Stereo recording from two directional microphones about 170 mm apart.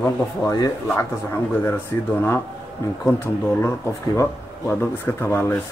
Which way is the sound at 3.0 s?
15° left (ahead or behind).